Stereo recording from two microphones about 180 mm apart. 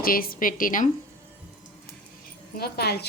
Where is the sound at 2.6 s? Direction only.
60° left (ahead or behind).